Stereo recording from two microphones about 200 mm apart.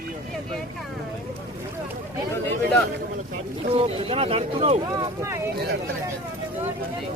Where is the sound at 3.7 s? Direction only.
30° right (ahead or behind).